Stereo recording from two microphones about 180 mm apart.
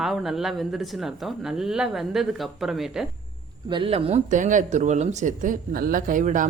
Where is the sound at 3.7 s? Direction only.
30° right (ahead or behind); by 6.5 s 45° right (ahead or behind).